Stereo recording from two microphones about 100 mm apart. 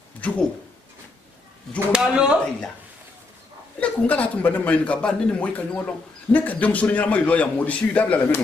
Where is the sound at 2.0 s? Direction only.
10° right (ahead or behind).